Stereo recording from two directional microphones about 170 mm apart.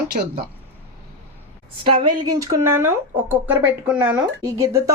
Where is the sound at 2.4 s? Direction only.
15° right (ahead or behind).